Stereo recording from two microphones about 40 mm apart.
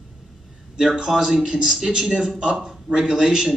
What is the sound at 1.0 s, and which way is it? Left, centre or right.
Speech, centre.